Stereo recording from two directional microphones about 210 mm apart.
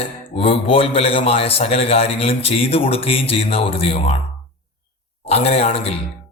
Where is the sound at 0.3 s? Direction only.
25° left (ahead or behind).